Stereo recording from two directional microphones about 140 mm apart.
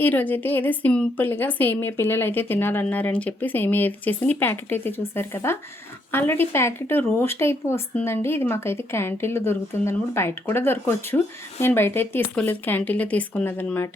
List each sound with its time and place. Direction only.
0.0 s a woman's voice: 15° left (ahead or behind)